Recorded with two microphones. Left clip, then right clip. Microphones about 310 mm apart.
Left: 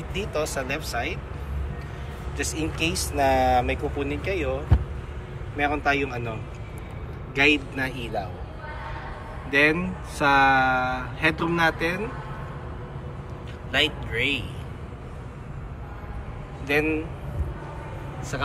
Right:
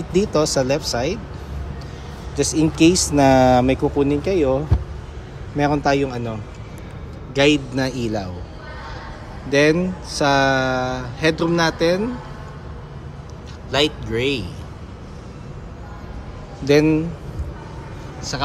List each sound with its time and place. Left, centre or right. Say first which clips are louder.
0.1 s speech: right 10 dB; centre
2.3 s speech: right 10 dB; centre
5.6 s speech: right 5 dB; centre
7.3 s speech: right 4 dB; centre
9.5 s speech: right 4 dB; centre
13.7 s speech: right 4 dB; centre
16.6 s speech: right 8 dB; centre